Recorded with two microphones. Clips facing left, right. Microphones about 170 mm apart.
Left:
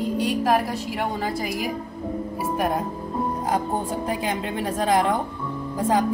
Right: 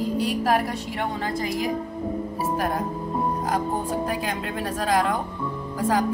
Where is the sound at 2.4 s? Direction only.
20° left (ahead or behind).